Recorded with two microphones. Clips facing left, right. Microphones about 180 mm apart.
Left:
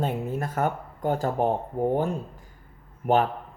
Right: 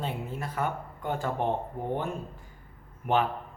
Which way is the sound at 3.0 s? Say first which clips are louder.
Left 4 dB; 40° left (ahead or behind).